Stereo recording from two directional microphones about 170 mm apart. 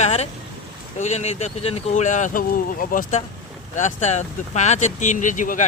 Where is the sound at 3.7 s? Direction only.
45° left (ahead or behind).